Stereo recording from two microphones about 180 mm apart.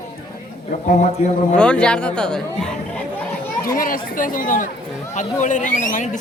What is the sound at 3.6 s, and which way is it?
Speech, 50° left (ahead or behind).